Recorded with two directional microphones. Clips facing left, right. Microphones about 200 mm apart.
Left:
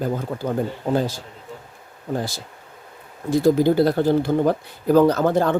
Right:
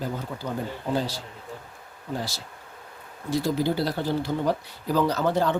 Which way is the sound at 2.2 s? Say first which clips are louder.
Left 5 dB; 50° left (ahead or behind).